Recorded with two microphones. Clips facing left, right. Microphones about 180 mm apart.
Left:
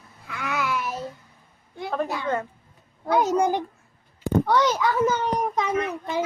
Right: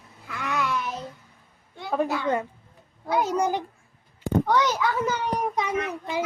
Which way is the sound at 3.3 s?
55° left (ahead or behind).